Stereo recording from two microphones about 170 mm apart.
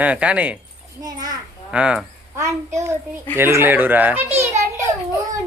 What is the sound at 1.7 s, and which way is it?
Speech, 5° right (ahead or behind).